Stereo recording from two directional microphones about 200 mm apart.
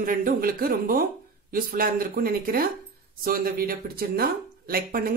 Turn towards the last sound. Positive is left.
turn(degrees=-45)  # may be behind; listen again after turning